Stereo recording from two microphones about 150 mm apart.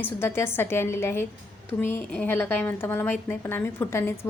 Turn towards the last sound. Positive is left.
turn(degrees=15)  # may be behind; listen again after turning